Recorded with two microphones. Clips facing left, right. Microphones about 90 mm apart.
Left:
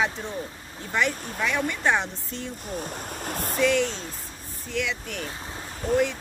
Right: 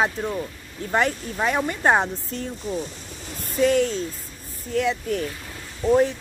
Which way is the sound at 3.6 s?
45° right (ahead or behind).